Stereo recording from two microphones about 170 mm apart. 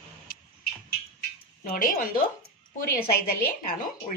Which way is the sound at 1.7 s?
55° left (ahead or behind).